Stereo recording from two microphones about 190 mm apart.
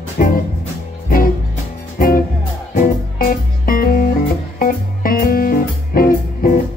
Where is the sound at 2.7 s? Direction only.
45° left (ahead or behind).